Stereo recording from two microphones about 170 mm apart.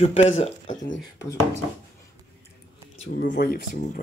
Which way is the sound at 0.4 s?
45° left (ahead or behind).